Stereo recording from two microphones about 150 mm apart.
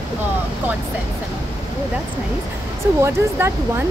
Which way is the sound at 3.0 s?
20° right (ahead or behind).